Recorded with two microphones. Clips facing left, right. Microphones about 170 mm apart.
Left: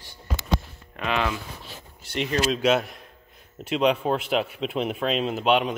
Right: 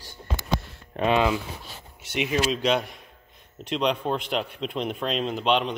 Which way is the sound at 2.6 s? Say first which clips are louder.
Left 2 dB; 5° left (ahead or behind).